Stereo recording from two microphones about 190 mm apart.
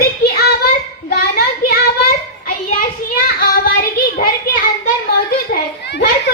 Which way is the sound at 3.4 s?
50° left (ahead or behind).